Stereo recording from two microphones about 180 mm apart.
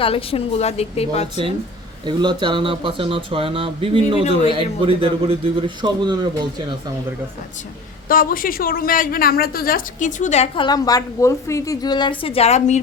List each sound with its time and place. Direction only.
0.0 s a woman's voice: 30° left (ahead or behind)
2.0 s speech: 25° right (ahead or behind)
8.0 s a woman's voice: 50° left (ahead or behind)